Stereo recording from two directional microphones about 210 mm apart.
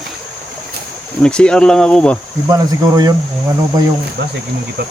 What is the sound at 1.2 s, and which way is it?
Speech, 5° left (ahead or behind).